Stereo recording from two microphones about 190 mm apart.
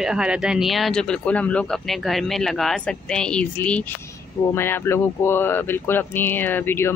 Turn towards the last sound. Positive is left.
turn(degrees=10)  # may be behind; listen again after turning